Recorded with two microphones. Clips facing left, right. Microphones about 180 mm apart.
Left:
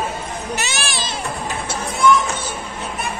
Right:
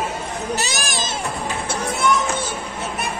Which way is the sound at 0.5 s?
40° right (ahead or behind).